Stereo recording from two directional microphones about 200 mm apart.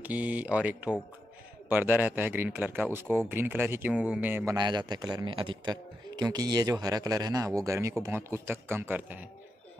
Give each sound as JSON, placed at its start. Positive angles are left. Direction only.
{"t": 0.0, "sound": "a man's voice", "side_deg": -5}
{"t": 4.6, "sound": "a man's voice", "side_deg": -20}